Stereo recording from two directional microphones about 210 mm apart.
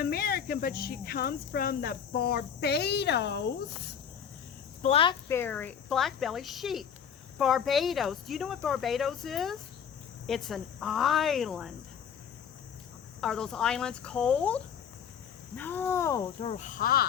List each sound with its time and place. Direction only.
0.0 s speech: 45° left (ahead or behind)
4.8 s speech: 30° left (ahead or behind)
5.3 s speech: 10° left (ahead or behind)
13.2 s speech: 5° left (ahead or behind)
16.4 s cricket: 30° left (ahead or behind)